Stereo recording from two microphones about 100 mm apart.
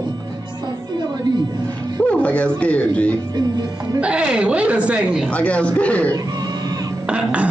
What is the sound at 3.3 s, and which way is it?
Speech, 40° right (ahead or behind).